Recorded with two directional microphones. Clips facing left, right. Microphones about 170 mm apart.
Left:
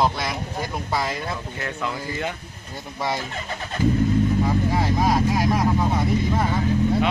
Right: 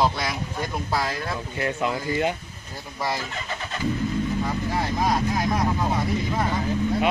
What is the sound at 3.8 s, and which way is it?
Vehicle, 50° left (ahead or behind).